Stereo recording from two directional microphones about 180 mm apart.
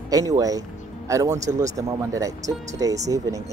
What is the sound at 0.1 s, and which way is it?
Speech, 20° right (ahead or behind).